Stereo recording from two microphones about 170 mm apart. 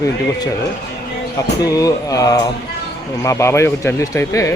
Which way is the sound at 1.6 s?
20° left (ahead or behind).